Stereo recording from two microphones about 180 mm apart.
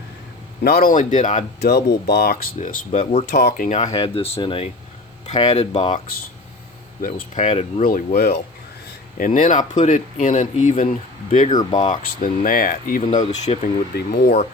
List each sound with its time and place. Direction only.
0.6 s speech: 55° left (ahead or behind)
1.6 s speech: 65° left (ahead or behind)
2.9 s speech: 35° left (ahead or behind)
3.3 s speech: 50° left (ahead or behind)
3.9 s speech: 30° left (ahead or behind)
5.2 s speech: 40° left (ahead or behind)
7.0 s speech: 45° left (ahead or behind)
7.8 s speech: 50° left (ahead or behind)
13.9 s speech: 60° left (ahead or behind)